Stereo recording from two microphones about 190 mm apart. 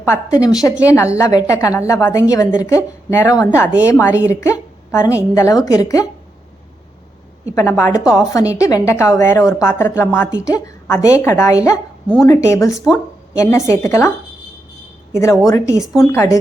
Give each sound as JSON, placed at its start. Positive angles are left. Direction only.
{"t": 0.0, "sound": "a woman's voice", "side_deg": 15}
{"t": 7.5, "sound": "a woman's voice", "side_deg": 15}
{"t": 15.1, "sound": "a woman's voice", "side_deg": 15}
{"t": 15.8, "sound": "a woman's voice", "side_deg": 0}
{"t": 16.1, "sound": "a woman's voice", "side_deg": 15}